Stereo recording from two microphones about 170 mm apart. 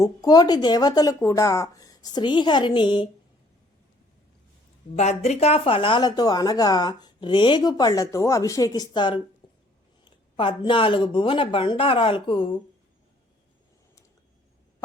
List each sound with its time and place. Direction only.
0.0 s speech: 25° left (ahead or behind)
4.9 s speech: 40° left (ahead or behind)